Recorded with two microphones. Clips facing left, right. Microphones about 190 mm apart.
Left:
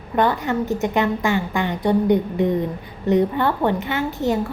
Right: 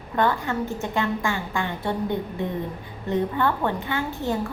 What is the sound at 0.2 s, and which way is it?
A woman's voice, 20° left (ahead or behind).